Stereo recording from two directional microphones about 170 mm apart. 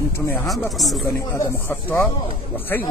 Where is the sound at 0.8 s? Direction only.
Centre (ahead or behind).